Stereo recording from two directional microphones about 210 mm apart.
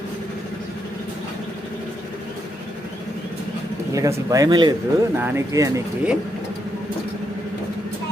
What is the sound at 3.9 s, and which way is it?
Speech, 15° right (ahead or behind).